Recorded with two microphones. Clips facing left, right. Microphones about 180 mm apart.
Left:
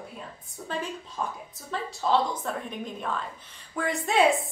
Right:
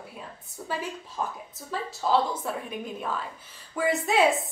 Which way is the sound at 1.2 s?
5° right (ahead or behind).